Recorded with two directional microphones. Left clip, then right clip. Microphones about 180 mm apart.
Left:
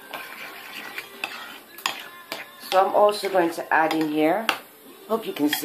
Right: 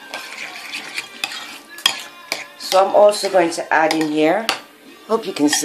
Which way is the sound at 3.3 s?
35° right (ahead or behind).